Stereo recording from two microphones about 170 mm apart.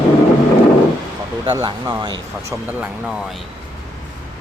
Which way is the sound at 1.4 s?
25° right (ahead or behind).